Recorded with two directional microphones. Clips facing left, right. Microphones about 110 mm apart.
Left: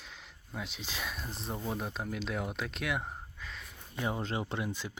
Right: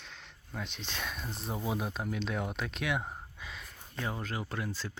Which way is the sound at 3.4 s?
5° right (ahead or behind).